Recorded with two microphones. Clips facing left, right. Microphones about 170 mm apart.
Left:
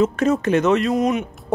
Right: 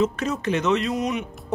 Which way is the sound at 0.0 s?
50° left (ahead or behind).